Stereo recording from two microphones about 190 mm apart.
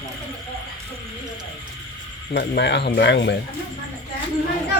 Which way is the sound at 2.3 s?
65° left (ahead or behind).